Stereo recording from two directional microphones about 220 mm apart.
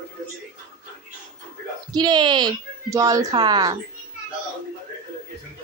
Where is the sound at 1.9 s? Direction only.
20° right (ahead or behind).